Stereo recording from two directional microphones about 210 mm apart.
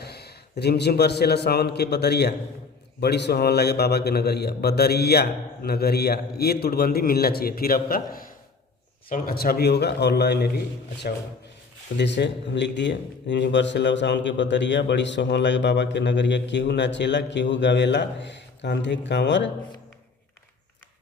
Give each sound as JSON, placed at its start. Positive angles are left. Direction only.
{"t": 0.0, "sound": "a man's voice", "side_deg": 50}
{"t": 11.9, "sound": "speech", "side_deg": 55}